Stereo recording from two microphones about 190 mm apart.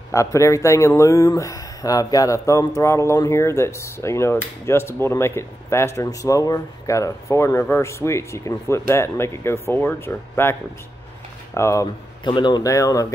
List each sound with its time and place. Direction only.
0.1 s speech: 15° left (ahead or behind)